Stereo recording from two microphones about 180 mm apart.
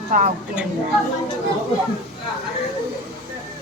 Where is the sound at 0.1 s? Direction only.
45° right (ahead or behind).